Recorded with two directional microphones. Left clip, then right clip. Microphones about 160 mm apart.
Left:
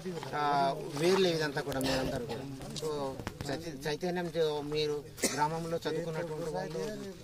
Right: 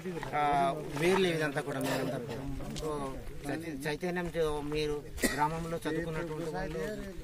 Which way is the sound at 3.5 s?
10° right (ahead or behind).